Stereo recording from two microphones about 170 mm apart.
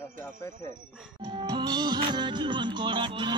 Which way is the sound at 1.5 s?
25° right (ahead or behind).